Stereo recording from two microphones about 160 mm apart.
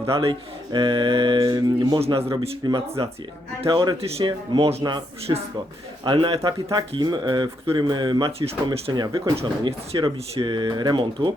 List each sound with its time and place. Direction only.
0.2 s speech: 35° right (ahead or behind)
6.1 s speech: 30° right (ahead or behind)
8.9 s speech: 25° right (ahead or behind)